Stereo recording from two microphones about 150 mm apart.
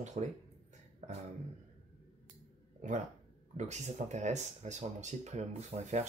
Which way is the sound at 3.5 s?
50° right (ahead or behind).